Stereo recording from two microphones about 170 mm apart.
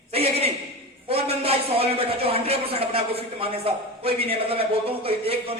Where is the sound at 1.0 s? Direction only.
35° right (ahead or behind).